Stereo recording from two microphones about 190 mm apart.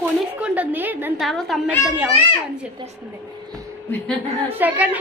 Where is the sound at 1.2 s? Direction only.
Centre (ahead or behind).